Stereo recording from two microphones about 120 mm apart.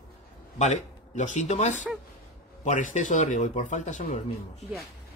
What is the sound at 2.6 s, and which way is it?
Speech, 90° left.